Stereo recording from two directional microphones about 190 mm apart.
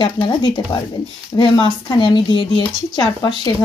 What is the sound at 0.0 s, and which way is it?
Speech, 25° left (ahead or behind).